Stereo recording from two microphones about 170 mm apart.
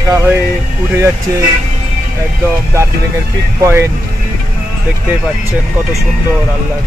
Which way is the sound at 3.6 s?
15° right (ahead or behind).